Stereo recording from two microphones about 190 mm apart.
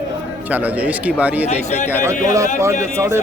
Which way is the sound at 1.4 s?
35° left (ahead or behind).